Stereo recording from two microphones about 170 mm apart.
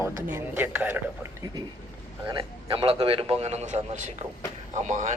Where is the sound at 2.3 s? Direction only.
30° right (ahead or behind).